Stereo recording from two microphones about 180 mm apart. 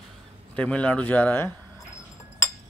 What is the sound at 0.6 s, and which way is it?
Speech, 5° left (ahead or behind).